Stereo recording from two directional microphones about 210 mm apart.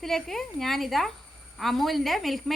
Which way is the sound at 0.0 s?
Centre (ahead or behind).